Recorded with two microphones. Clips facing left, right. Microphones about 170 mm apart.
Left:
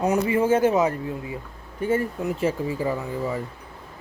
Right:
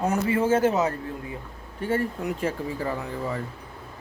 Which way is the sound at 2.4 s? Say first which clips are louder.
Left 5 dB; 10° left (ahead or behind).